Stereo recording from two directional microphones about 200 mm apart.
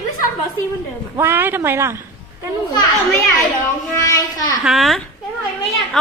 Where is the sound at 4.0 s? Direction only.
15° left (ahead or behind).